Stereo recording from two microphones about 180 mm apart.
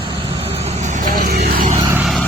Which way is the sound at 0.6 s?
40° right (ahead or behind).